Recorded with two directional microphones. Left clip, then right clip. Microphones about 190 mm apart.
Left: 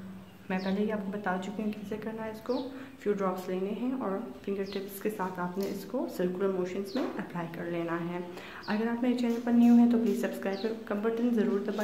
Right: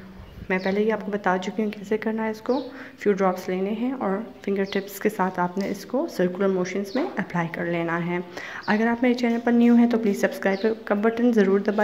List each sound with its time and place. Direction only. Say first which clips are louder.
0.5 s a woman's voice: right 10 dB; 30° right (ahead or behind)